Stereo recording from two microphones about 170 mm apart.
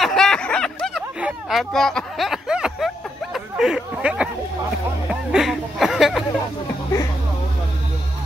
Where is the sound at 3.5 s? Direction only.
5° right (ahead or behind).